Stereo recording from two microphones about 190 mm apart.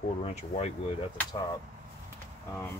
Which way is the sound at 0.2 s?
35° left (ahead or behind).